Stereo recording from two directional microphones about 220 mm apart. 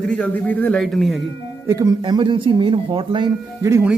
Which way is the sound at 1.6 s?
15° right (ahead or behind).